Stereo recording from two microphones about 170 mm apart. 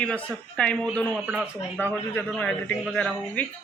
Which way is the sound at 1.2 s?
5° right (ahead or behind).